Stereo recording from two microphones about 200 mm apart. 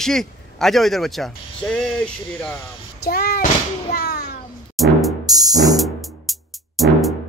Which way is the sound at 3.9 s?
55° left (ahead or behind).